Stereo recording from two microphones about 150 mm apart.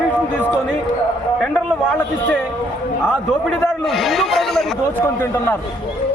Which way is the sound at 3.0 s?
Centre (ahead or behind).